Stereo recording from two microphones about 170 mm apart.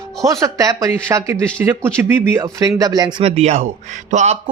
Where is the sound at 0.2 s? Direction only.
20° right (ahead or behind).